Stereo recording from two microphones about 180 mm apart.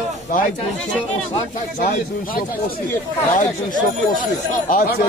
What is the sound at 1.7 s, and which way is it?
Speech, 50° left (ahead or behind).